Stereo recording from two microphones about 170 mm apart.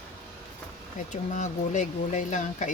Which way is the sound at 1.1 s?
45° left (ahead or behind).